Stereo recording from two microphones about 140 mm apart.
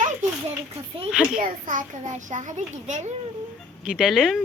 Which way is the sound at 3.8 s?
5° right (ahead or behind).